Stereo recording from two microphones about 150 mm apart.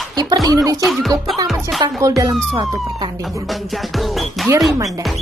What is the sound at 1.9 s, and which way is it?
Speech, 20° right (ahead or behind).